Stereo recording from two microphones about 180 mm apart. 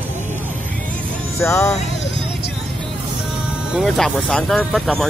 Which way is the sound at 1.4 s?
15° left (ahead or behind).